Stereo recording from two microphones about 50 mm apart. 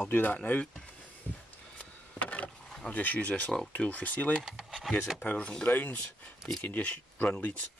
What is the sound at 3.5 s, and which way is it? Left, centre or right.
Speech, left.